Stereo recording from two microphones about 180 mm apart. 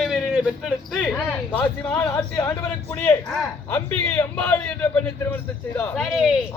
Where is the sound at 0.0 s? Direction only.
Centre (ahead or behind).